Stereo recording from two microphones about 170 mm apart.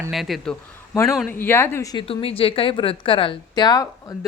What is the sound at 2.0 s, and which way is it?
A woman's voice, 35° left (ahead or behind).